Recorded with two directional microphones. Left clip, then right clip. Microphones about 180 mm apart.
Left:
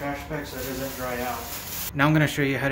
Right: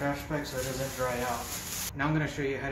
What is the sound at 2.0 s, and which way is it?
Speech, 60° left (ahead or behind).